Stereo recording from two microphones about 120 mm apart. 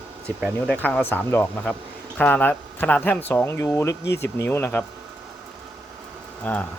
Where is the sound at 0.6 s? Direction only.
15° left (ahead or behind).